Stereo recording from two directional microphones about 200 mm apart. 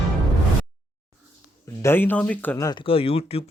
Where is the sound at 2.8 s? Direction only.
30° left (ahead or behind).